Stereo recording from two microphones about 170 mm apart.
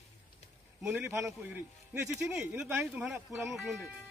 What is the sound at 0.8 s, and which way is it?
Speech, 10° right (ahead or behind).